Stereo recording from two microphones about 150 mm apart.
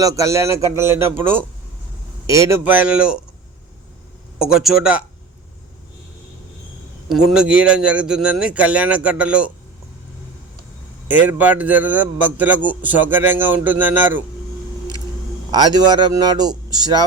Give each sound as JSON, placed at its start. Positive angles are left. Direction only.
{"t": 0.0, "sound": "a man's voice", "side_deg": -20}
{"t": 4.4, "sound": "speech", "side_deg": -5}
{"t": 7.1, "sound": "a man's voice", "side_deg": -5}
{"t": 11.1, "sound": "a man's voice", "side_deg": -10}
{"t": 15.5, "sound": "a man's voice", "side_deg": -25}